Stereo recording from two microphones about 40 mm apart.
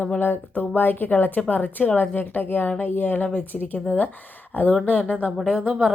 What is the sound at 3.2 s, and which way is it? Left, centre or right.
Speech, left.